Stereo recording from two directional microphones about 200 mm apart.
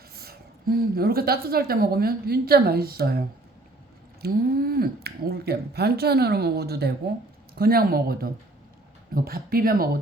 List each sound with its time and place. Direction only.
0.2 s a woman's voice: 50° right (ahead or behind)